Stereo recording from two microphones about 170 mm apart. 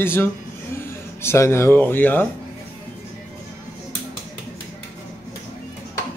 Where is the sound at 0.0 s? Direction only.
15° left (ahead or behind).